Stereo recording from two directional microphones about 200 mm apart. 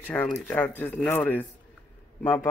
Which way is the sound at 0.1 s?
5° left (ahead or behind).